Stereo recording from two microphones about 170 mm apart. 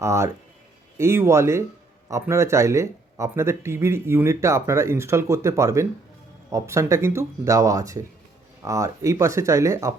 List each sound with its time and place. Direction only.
0.0 s speech: 15° right (ahead or behind)